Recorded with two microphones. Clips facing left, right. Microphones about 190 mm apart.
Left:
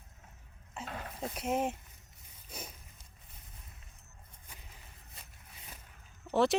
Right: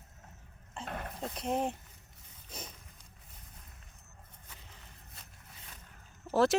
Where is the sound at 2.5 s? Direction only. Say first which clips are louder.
Even; 5° left (ahead or behind).